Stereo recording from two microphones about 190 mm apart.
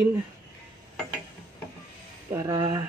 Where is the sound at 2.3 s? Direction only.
15° right (ahead or behind).